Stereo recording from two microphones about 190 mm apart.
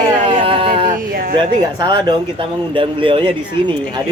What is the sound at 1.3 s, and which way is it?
Speech, 25° right (ahead or behind).